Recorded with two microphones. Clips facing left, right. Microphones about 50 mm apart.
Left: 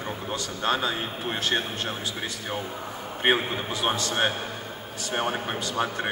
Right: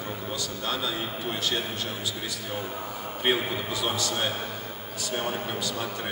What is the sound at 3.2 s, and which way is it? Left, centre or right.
A man's voice, left.